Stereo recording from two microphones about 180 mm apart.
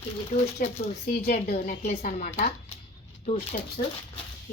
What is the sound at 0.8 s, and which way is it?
Speech, 45° left (ahead or behind).